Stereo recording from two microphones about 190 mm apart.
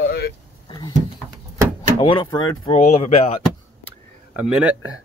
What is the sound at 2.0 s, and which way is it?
Speech, 25° left (ahead or behind).